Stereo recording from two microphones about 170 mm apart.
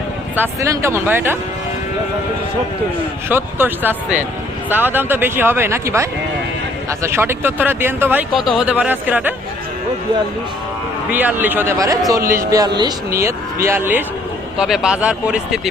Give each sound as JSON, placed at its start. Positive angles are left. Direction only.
{"t": 0.3, "sound": "speech", "side_deg": -15}
{"t": 3.2, "sound": "speech", "side_deg": -10}
{"t": 8.3, "sound": "speech", "side_deg": 0}
{"t": 11.1, "sound": "speech", "side_deg": -10}
{"t": 12.2, "sound": "speech", "side_deg": -55}
{"t": 12.5, "sound": "speech", "side_deg": -20}